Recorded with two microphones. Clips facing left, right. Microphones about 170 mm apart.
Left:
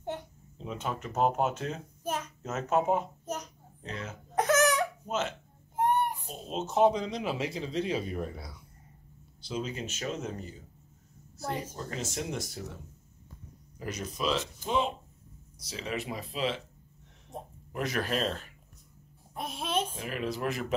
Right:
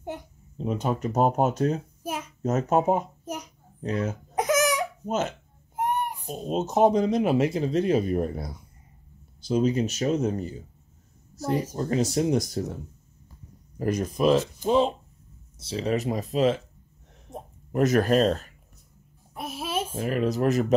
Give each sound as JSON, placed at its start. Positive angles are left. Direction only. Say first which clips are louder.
{"t": 0.6, "sound": "speech", "louder": "right 9 dB", "side_deg": -45}
{"t": 2.0, "sound": "a sound", "louder": "even", "side_deg": -10}
{"t": 2.4, "sound": "speech", "louder": "right 6 dB", "side_deg": -40}
{"t": 4.4, "sound": "crying", "louder": "right 2 dB", "side_deg": -10}
{"t": 5.0, "sound": "speech", "louder": "right 5 dB", "side_deg": -40}
{"t": 5.8, "sound": "child singing", "louder": "even", "side_deg": -10}
{"t": 6.2, "sound": "speech", "louder": "right 8 dB", "side_deg": -45}
{"t": 11.7, "sound": "speech", "louder": "right 12 dB", "side_deg": -40}
{"t": 13.7, "sound": "speech", "louder": "right 10 dB", "side_deg": -50}
{"t": 17.7, "sound": "speech", "louder": "right 11 dB", "side_deg": -45}
{"t": 19.3, "sound": "a sound", "louder": "right 2 dB", "side_deg": -5}
{"t": 19.9, "sound": "speech", "louder": "right 9 dB", "side_deg": -40}